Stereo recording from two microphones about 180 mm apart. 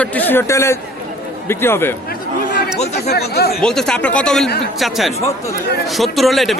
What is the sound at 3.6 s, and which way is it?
A man's voice, 5° left (ahead or behind).